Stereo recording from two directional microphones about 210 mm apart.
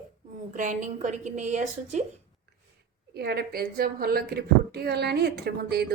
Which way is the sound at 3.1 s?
50° right (ahead or behind).